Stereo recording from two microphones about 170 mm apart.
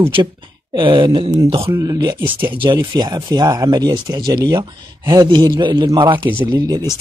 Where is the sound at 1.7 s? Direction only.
20° right (ahead or behind).